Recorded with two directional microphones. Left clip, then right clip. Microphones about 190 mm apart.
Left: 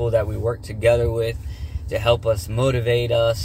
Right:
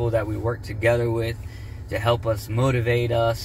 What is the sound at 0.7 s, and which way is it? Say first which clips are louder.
Speech: left 4 dB; 25° left (ahead or behind).